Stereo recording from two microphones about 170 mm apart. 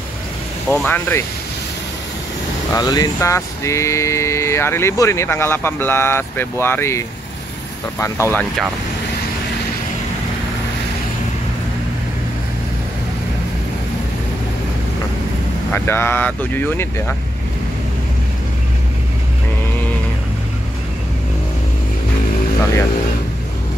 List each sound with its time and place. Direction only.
0.7 s speech: 10° left (ahead or behind)
2.7 s speech: 20° left (ahead or behind)
15.7 s speech: 15° left (ahead or behind)